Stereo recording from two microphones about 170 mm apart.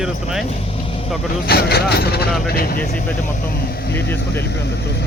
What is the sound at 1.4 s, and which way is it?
Speech, 70° left (ahead or behind).